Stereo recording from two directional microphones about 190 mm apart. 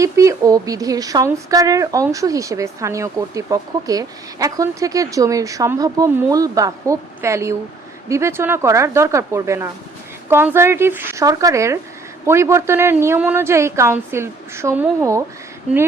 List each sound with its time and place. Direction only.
0.0 s a woman's voice: 15° right (ahead or behind)